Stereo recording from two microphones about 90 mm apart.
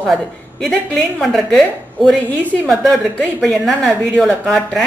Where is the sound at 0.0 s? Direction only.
Centre (ahead or behind).